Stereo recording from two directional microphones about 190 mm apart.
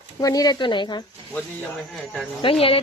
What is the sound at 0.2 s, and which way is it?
Speech, 20° left (ahead or behind).